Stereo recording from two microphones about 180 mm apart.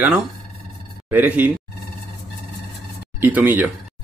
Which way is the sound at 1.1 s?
10° right (ahead or behind).